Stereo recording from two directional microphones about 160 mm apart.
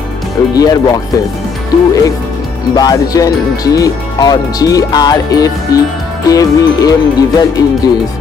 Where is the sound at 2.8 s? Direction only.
25° left (ahead or behind).